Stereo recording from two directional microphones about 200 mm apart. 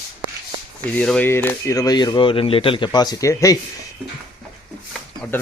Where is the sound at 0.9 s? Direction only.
5° left (ahead or behind).